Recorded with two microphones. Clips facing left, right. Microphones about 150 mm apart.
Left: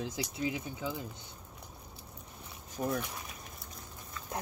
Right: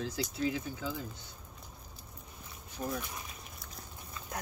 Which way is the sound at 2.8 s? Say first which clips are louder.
Left 4 dB; 90° left.